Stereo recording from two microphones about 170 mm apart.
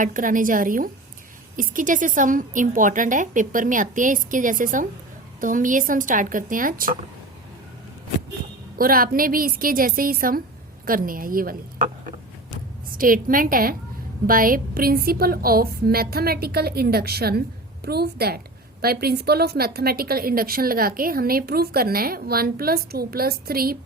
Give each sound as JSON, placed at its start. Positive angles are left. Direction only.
{"t": 0.0, "sound": "a woman's voice", "side_deg": -50}
{"t": 8.8, "sound": "a woman's voice", "side_deg": -55}